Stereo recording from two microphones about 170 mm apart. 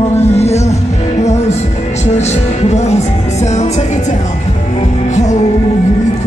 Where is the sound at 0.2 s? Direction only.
40° left (ahead or behind).